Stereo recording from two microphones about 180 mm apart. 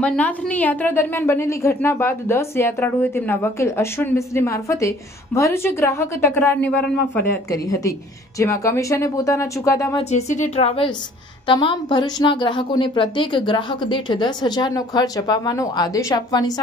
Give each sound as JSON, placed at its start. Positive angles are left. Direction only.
{"t": 0.0, "sound": "a woman's voice", "side_deg": 5}
{"t": 9.9, "sound": "a woman's voice", "side_deg": 40}